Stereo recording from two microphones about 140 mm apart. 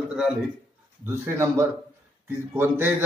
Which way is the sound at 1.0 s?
15° right (ahead or behind).